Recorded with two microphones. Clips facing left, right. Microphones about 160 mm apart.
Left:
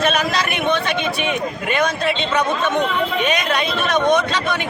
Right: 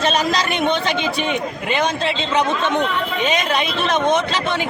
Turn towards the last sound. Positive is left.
turn(degrees=-30)  # may be behind; listen again after turning